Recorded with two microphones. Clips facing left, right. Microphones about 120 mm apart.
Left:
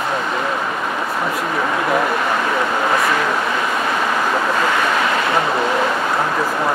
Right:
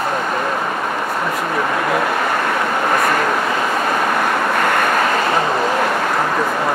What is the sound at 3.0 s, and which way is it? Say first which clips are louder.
Speech: right 1 dB; 50° right (ahead or behind).